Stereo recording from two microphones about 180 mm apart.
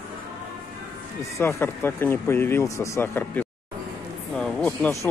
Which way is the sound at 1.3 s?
15° left (ahead or behind).